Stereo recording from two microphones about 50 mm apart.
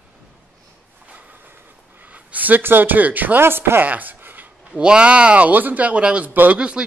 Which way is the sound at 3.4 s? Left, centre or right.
Right.